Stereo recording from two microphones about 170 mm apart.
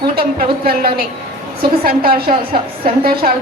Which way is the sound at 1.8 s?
60° right (ahead or behind).